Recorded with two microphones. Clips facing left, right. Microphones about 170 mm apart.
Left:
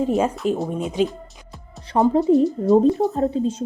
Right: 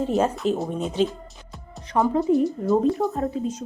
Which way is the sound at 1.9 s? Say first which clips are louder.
Left 4 dB; 30° left (ahead or behind).